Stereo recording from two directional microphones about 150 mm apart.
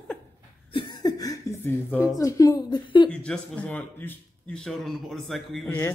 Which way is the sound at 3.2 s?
5° left (ahead or behind).